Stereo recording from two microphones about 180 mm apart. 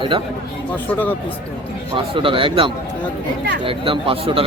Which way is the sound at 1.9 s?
30° right (ahead or behind).